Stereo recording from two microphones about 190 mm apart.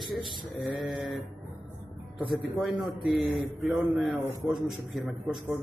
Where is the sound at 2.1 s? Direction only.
Centre (ahead or behind).